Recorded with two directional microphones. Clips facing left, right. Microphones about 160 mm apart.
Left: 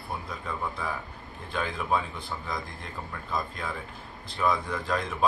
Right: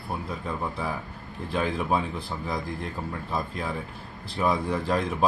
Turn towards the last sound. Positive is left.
turn(degrees=-30)  # may be behind; listen again after turning